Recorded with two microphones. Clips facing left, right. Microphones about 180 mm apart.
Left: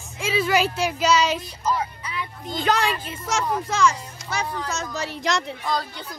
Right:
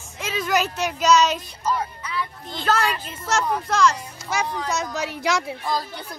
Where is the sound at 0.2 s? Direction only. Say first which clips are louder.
Left 2 dB; 10° left (ahead or behind).